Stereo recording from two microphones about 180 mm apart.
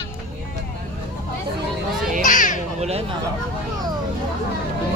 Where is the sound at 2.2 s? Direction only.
45° left (ahead or behind).